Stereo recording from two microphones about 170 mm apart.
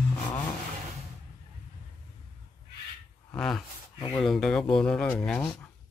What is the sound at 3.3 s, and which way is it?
Speech, 5° left (ahead or behind).